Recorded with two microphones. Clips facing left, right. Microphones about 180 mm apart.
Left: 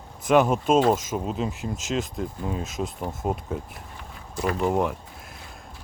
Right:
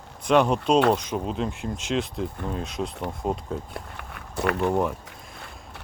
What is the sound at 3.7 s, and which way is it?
Walk, 65° right (ahead or behind).